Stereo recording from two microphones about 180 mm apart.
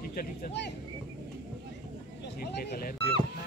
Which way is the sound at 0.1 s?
55° left (ahead or behind).